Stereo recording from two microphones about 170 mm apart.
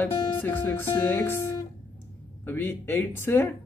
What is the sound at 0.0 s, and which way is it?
Speech, 10° left (ahead or behind).